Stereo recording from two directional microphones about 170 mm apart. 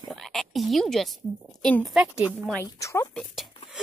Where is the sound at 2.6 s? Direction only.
20° left (ahead or behind).